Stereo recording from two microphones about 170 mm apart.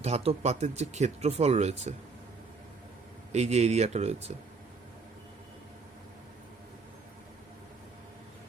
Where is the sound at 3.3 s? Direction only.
40° right (ahead or behind).